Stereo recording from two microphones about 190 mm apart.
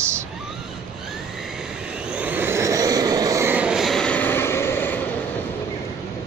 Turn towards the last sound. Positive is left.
turn(degrees=10)  # may be behind; listen again after turning